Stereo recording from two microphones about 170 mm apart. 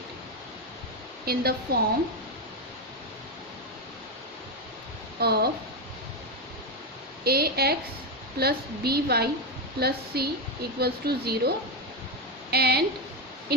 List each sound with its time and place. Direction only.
1.2 s a woman's voice: 65° right (ahead or behind)
5.2 s a woman's voice: 70° right (ahead or behind)
7.3 s a woman's voice: 65° right (ahead or behind)